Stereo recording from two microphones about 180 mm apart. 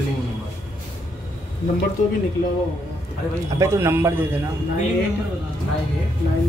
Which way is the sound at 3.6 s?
15° right (ahead or behind).